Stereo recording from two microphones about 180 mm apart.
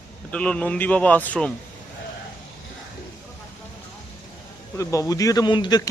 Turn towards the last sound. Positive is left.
turn(degrees=25)  # may be behind; listen again after turning